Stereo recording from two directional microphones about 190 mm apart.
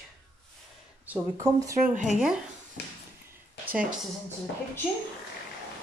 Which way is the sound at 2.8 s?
60° left (ahead or behind).